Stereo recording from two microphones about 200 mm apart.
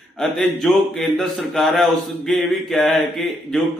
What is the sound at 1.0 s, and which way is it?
Speech, centre (ahead or behind).